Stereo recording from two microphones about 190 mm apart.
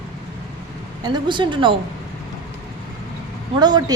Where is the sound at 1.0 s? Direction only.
25° right (ahead or behind).